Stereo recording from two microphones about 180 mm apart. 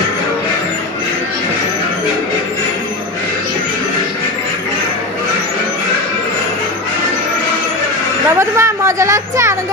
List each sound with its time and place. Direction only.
8.4 s a woman's voice: 15° right (ahead or behind)